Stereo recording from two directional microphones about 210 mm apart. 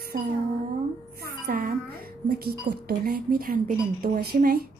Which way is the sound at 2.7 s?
50° right (ahead or behind).